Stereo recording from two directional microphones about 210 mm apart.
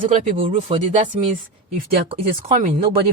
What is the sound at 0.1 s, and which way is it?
Speech, 25° right (ahead or behind).